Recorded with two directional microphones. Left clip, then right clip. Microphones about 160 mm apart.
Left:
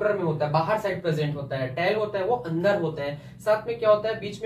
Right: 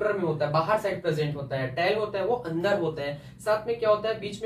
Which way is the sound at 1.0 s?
15° right (ahead or behind).